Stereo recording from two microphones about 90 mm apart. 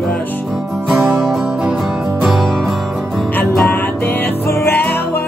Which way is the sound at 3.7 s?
25° left (ahead or behind).